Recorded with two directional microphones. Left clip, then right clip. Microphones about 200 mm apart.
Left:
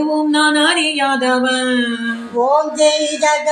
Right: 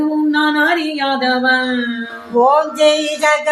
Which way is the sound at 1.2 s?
30° left (ahead or behind).